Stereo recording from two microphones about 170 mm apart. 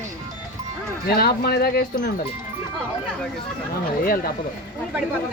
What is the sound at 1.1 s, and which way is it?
Speech, 65° left (ahead or behind).